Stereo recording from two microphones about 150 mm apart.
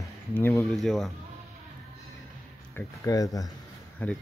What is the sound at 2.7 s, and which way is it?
Speech, 20° left (ahead or behind).